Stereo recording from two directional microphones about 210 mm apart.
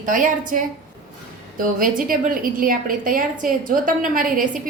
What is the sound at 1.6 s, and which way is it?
A woman's voice, 40° right (ahead or behind).